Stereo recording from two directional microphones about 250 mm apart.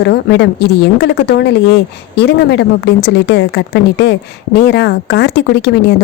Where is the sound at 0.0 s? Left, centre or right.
Left.